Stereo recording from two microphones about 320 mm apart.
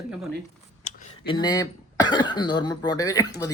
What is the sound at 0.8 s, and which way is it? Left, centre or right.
Speech, centre.